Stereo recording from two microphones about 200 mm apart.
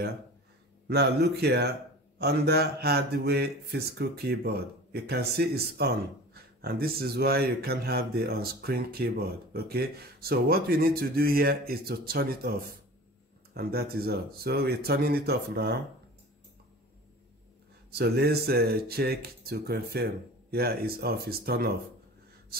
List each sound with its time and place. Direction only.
0.8 s speech: 55° right (ahead or behind)
13.6 s speech: 50° right (ahead or behind)
17.9 s speech: 55° right (ahead or behind)
22.5 s a sound: 50° right (ahead or behind)